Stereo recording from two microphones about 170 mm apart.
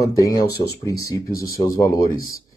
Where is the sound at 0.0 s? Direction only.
20° left (ahead or behind).